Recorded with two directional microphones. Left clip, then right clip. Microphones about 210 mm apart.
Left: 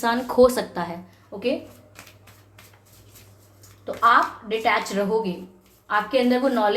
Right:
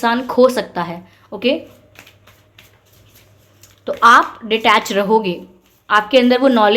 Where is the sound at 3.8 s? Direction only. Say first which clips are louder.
Right 8 dB; 50° right (ahead or behind).